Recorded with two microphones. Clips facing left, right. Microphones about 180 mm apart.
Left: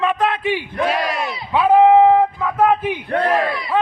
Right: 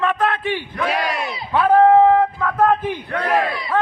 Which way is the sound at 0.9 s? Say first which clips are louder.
Even; centre (ahead or behind).